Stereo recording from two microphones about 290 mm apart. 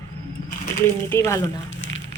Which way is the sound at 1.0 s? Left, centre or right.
Centre.